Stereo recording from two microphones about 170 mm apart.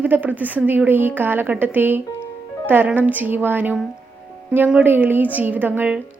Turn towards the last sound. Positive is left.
turn(degrees=-10)  # may be behind; listen again after turning